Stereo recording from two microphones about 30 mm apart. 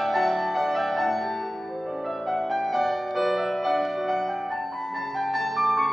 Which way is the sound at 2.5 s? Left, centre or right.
Centre.